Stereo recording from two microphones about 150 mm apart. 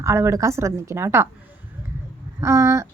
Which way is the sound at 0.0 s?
20° right (ahead or behind).